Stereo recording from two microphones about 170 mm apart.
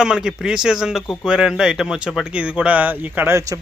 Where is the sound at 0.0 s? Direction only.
5° right (ahead or behind).